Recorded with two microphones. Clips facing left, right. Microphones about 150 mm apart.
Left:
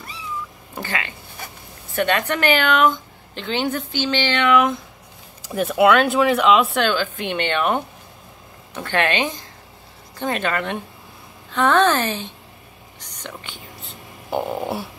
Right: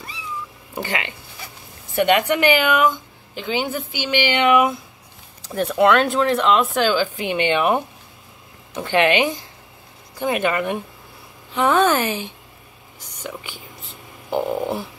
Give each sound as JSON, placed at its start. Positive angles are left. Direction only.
{"t": 0.7, "sound": "a woman's voice", "side_deg": -20}
{"t": 5.4, "sound": "a woman's voice", "side_deg": 10}